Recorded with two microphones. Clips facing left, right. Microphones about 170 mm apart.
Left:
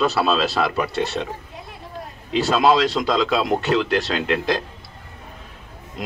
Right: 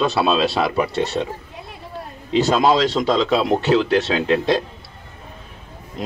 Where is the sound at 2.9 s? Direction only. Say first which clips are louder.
Right 2 dB; 25° right (ahead or behind).